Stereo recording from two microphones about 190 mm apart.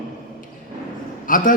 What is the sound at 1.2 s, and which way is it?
Speech, 45° left (ahead or behind).